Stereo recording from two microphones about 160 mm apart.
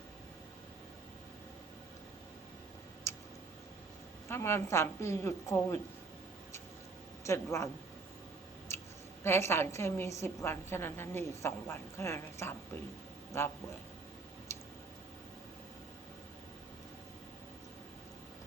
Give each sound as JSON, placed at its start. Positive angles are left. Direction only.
{"t": 3.1, "sound": "a sound", "side_deg": 15}
{"t": 4.3, "sound": "a woman's voice", "side_deg": 15}
{"t": 7.3, "sound": "a woman's voice", "side_deg": 20}
{"t": 8.7, "sound": "chewing", "side_deg": 15}
{"t": 9.2, "sound": "a woman's voice", "side_deg": 15}
{"t": 14.5, "sound": "a sound", "side_deg": 15}